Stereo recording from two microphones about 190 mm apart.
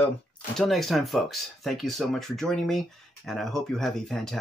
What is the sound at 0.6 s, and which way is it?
Speech, centre (ahead or behind).